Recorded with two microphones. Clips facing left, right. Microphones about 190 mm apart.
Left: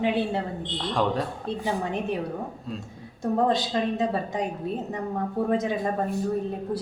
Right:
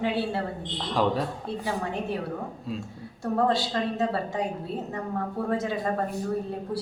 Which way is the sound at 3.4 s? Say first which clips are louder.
Left 1 dB; 20° left (ahead or behind).